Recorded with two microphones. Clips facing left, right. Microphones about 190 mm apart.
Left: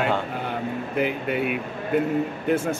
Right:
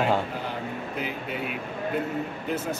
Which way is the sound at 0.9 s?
60° left (ahead or behind).